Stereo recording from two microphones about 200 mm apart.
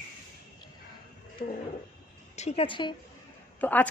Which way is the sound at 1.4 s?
45° left (ahead or behind).